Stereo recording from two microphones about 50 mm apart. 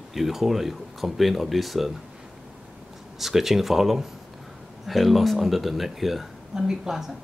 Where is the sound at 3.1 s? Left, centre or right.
Centre.